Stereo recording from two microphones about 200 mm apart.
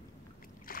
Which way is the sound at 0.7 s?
45° left (ahead or behind).